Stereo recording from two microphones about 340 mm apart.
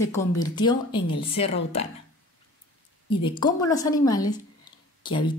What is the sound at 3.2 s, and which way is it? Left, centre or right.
A woman's voice, centre.